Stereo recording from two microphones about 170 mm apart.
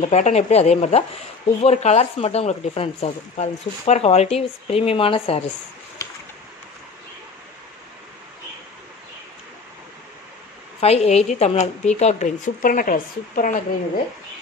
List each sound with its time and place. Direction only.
0.0 s speech: 40° left (ahead or behind)
10.8 s a woman's voice: 40° left (ahead or behind); by 13.6 s 55° left (ahead or behind)